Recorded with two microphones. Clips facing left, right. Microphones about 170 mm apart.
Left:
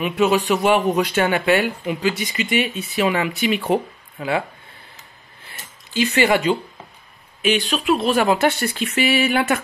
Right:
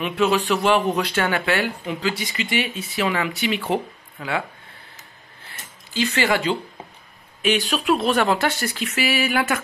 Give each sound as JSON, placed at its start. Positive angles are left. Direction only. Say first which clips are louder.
{"t": 0.0, "sound": "speech", "louder": "left 2 dB", "side_deg": 15}
{"t": 5.9, "sound": "speech", "louder": "left 4 dB", "side_deg": 15}
{"t": 7.4, "sound": "speech", "louder": "left 1 dB", "side_deg": 0}
{"t": 8.5, "sound": "speech", "louder": "left 4 dB", "side_deg": 25}